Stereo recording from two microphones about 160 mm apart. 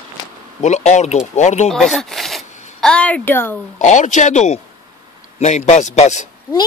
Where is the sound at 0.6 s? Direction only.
45° left (ahead or behind).